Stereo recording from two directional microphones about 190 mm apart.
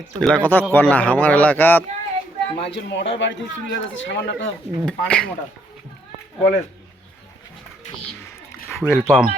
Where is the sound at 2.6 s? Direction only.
65° left (ahead or behind).